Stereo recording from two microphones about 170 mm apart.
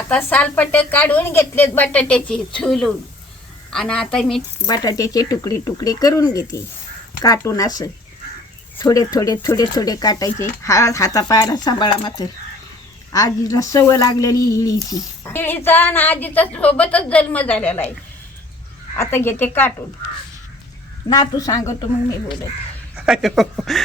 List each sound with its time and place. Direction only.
0.1 s a woman's voice: 10° left (ahead or behind)
4.6 s a woman's voice: 20° left (ahead or behind)
18.9 s a woman's voice: 15° left (ahead or behind)
21.1 s speech: 20° left (ahead or behind)
23.0 s speech: 5° right (ahead or behind)